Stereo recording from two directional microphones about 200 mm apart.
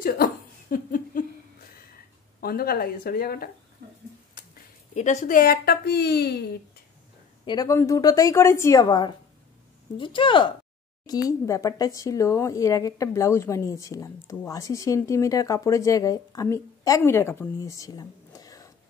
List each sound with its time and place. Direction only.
0.0 s a sound: 45° left (ahead or behind)
2.4 s speech: 50° left (ahead or behind)
4.9 s speech: 35° left (ahead or behind); by 6.3 s 55° left (ahead or behind)
7.4 s speech: 20° left (ahead or behind)